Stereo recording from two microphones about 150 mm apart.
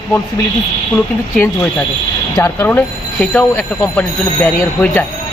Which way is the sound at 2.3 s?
20° left (ahead or behind).